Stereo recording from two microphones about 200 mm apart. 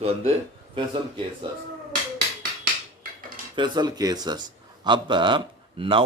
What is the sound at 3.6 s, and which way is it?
Speech, 20° right (ahead or behind).